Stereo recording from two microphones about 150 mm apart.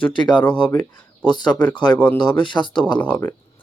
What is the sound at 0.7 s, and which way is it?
Speech, 15° left (ahead or behind).